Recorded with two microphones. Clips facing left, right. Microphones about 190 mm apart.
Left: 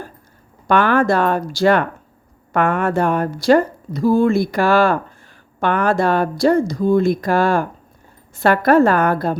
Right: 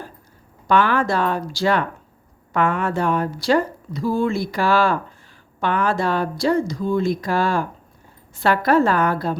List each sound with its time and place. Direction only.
0.7 s speech: 55° left (ahead or behind)